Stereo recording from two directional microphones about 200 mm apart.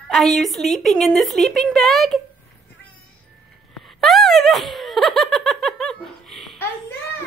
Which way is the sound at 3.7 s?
Centre (ahead or behind).